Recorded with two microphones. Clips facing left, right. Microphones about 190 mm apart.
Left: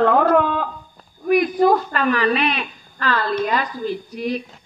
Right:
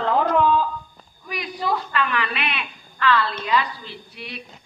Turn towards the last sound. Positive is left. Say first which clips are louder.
# left 13 dB
turn(degrees=40)  # may be behind; listen again after turning